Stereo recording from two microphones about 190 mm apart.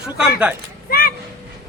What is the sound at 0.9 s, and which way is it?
Speech, 50° left (ahead or behind).